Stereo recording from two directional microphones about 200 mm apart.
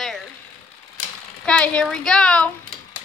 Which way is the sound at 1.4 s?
5° left (ahead or behind).